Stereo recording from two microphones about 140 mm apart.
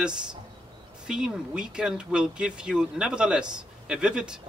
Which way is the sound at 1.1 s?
5° right (ahead or behind).